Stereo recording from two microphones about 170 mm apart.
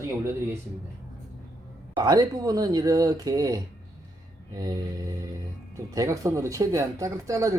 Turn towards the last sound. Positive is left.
turn(degrees=-20)  # may be behind; listen again after turning